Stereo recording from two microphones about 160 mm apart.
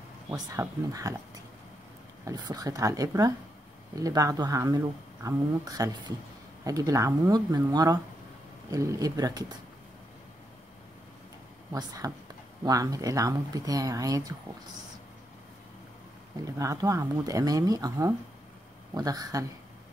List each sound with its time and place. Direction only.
0.3 s speech: 20° right (ahead or behind)
2.2 s speech: 25° right (ahead or behind)
11.7 s speech: 25° right (ahead or behind)
16.4 s speech: 20° right (ahead or behind)